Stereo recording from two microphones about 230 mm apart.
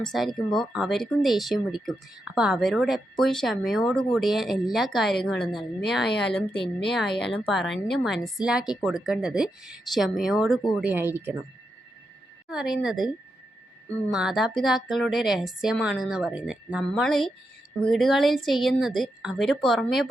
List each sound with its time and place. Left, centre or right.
0.0 s speech: centre
12.5 s speech: centre